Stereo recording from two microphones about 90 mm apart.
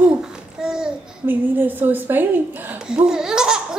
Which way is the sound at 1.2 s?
20° right (ahead or behind).